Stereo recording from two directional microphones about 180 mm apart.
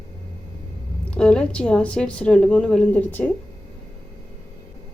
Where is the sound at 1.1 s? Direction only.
5° left (ahead or behind).